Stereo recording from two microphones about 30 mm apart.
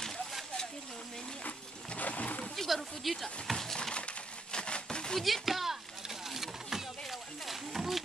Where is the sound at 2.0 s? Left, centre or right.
Left.